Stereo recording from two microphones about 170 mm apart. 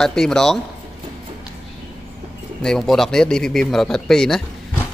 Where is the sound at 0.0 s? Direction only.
5° left (ahead or behind).